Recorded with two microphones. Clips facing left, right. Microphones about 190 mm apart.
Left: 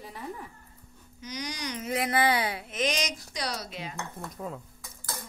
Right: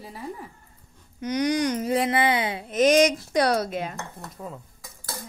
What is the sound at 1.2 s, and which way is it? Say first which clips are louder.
Speech: right 13 dB; 60° right (ahead or behind).